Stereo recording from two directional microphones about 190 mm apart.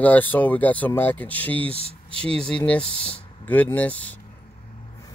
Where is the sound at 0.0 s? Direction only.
10° left (ahead or behind).